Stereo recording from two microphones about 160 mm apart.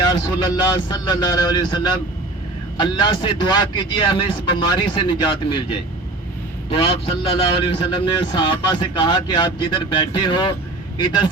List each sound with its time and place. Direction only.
0.1 s a man's voice: 30° left (ahead or behind)
6.7 s a man's voice: 35° left (ahead or behind)